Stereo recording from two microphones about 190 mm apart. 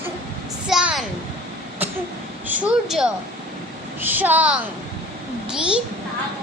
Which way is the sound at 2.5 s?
5° right (ahead or behind).